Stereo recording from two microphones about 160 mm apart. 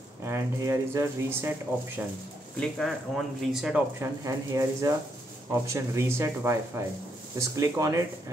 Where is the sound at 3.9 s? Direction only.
20° right (ahead or behind).